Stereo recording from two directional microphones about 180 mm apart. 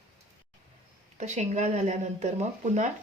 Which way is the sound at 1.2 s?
40° right (ahead or behind).